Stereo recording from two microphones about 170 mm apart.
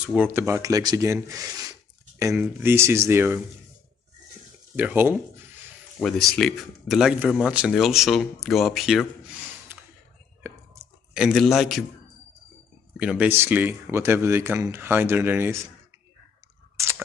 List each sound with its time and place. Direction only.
0.0 s speech: 10° right (ahead or behind)
4.7 s speech: 10° right (ahead or behind)
5.9 s speech: 5° left (ahead or behind)
10.4 s clicking: 10° right (ahead or behind)
12.9 s speech: 5° right (ahead or behind)